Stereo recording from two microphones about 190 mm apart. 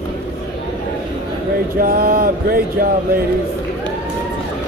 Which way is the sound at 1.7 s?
50° right (ahead or behind).